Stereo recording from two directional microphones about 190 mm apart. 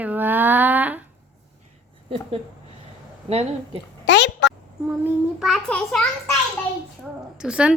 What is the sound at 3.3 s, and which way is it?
Speech, 30° right (ahead or behind).